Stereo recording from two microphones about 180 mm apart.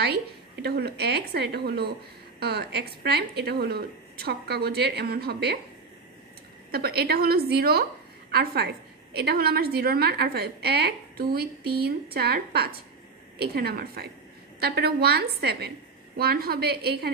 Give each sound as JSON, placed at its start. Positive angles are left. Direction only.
{"t": 0.0, "sound": "a woman's voice", "side_deg": -65}
{"t": 6.7, "sound": "a woman's voice", "side_deg": -60}